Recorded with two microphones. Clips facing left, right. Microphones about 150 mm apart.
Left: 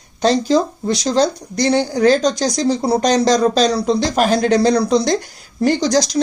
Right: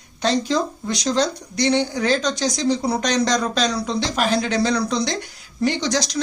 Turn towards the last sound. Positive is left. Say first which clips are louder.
# left 7 dB
turn(degrees=40)  # may be behind; listen again after turning